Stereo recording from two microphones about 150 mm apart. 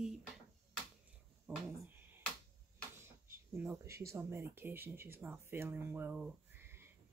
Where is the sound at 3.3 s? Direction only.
15° right (ahead or behind).